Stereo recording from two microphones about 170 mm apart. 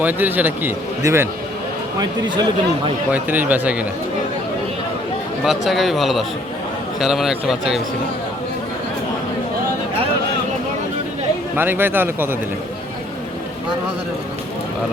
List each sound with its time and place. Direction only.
0.0 s a man's voice: 10° right (ahead or behind)
2.0 s speech: 25° right (ahead or behind)
3.1 s a man's voice: 10° right (ahead or behind)
5.5 s speech: centre (ahead or behind)
11.5 s a man's voice: 10° right (ahead or behind)